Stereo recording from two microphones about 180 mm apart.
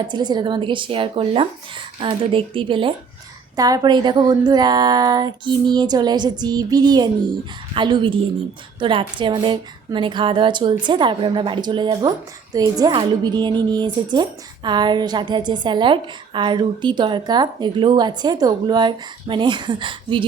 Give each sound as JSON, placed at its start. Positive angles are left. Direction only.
{"t": 0.1, "sound": "speech", "side_deg": -25}